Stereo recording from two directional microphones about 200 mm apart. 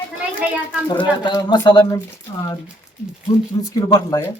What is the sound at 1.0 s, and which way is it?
Speech, 20° left (ahead or behind).